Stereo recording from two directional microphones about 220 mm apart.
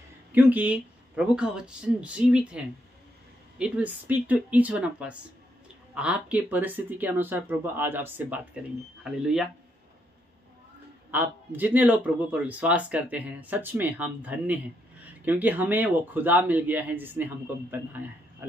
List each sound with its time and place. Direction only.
0.3 s a man's voice: 10° right (ahead or behind)
11.1 s a man's voice: 10° right (ahead or behind)